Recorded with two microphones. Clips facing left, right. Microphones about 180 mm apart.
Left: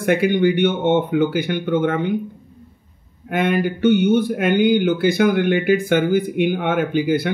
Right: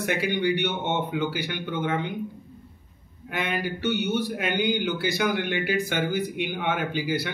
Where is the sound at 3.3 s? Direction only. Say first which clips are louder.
Left 10 dB; 50° left (ahead or behind).